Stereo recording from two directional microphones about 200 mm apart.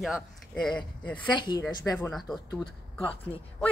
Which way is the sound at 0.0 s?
Centre (ahead or behind).